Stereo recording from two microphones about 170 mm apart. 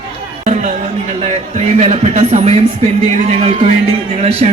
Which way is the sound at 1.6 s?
40° right (ahead or behind).